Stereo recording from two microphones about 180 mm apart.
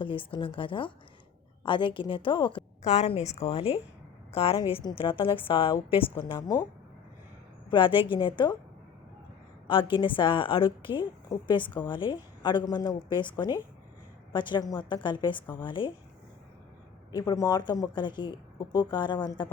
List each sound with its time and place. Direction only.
0.0 s a woman's voice: 30° left (ahead or behind)
2.8 s a woman's voice: 40° left (ahead or behind)
7.7 s a woman's voice: 30° left (ahead or behind)
9.9 s a woman's voice: 25° left (ahead or behind)
17.1 s a woman's voice: 20° left (ahead or behind)